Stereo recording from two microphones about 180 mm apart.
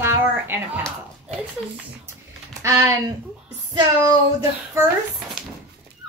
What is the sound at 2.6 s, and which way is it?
Speech, 15° right (ahead or behind).